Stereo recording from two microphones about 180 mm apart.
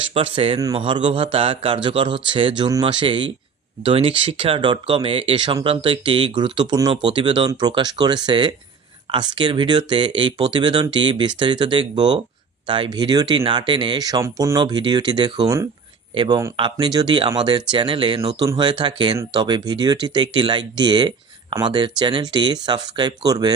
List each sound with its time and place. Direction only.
0.0 s speech: 30° right (ahead or behind)